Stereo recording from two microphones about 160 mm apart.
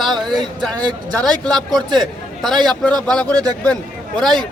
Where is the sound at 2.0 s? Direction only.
Centre (ahead or behind).